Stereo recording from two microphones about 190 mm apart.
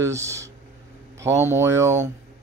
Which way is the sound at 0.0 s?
15° right (ahead or behind).